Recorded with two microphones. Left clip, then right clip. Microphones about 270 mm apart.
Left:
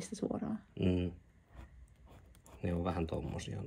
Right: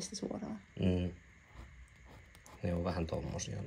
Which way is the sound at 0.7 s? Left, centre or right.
Centre.